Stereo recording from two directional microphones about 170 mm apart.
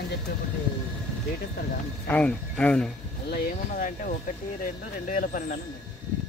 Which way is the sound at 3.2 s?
65° left (ahead or behind).